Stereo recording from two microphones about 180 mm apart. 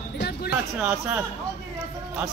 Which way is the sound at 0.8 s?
10° right (ahead or behind).